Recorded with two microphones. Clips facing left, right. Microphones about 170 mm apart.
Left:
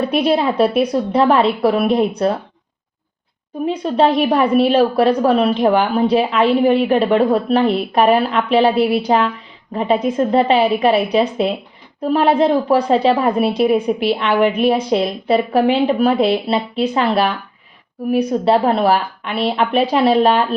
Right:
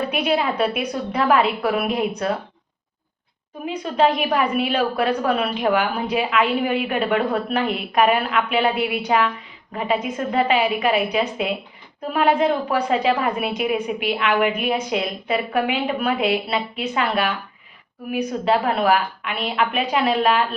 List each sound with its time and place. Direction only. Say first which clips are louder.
0.1 s a woman's voice: left 5 dB; 35° left (ahead or behind)
3.7 s a woman's voice: left 4 dB; 35° left (ahead or behind)